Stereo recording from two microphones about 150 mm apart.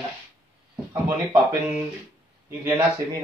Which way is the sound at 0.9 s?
15° right (ahead or behind).